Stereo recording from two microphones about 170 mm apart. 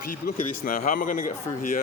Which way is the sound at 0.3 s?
50° left (ahead or behind).